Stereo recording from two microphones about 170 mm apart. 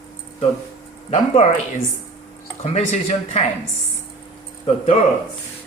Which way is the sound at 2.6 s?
40° left (ahead or behind).